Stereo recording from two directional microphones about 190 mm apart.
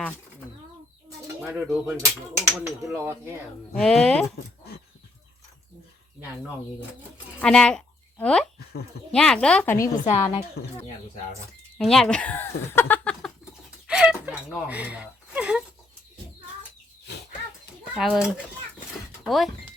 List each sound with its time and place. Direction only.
1.4 s speech: 10° right (ahead or behind)
3.8 s speech: 5° left (ahead or behind)
7.4 s speech: 5° left (ahead or behind)
9.7 s a woman's voice: 15° left (ahead or behind)
11.8 s a sound: centre (ahead or behind)
17.9 s speech: centre (ahead or behind)